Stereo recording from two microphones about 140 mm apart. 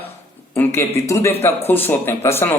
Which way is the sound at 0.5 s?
20° left (ahead or behind).